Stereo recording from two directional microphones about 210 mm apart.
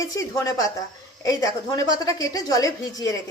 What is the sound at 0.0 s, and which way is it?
A woman's voice, 15° left (ahead or behind).